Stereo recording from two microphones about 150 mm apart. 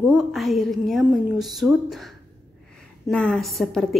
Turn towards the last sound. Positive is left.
turn(degrees=0)  # may be behind; listen again after turning